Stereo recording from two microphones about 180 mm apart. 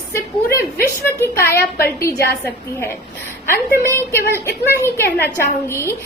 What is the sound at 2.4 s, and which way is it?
Speech, 10° left (ahead or behind).